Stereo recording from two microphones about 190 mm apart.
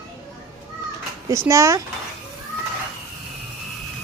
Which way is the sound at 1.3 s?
15° right (ahead or behind).